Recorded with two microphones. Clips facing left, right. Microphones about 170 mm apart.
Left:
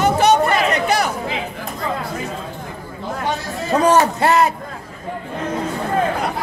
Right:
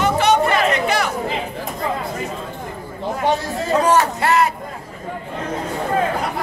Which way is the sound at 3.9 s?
20° left (ahead or behind).